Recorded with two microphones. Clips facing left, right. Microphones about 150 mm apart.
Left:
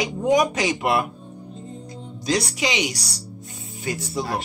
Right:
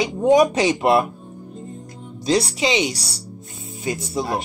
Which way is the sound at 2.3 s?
25° right (ahead or behind).